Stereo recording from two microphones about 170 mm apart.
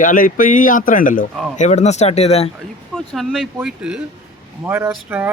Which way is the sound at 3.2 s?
5° right (ahead or behind).